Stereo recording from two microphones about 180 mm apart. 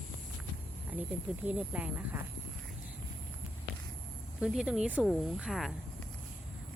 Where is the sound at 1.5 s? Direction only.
5° right (ahead or behind).